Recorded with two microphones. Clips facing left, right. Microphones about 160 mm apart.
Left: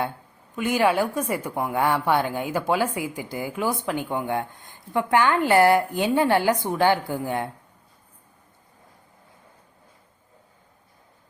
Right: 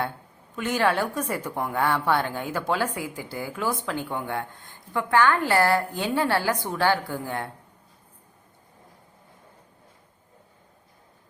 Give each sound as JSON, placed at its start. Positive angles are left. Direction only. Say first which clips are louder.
{"t": 0.5, "sound": "a woman's voice", "louder": "left 3 dB", "side_deg": 10}